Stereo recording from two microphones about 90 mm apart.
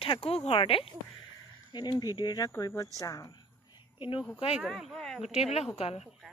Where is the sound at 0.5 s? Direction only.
90° left.